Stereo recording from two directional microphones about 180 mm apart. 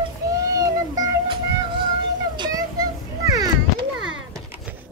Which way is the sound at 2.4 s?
20° right (ahead or behind).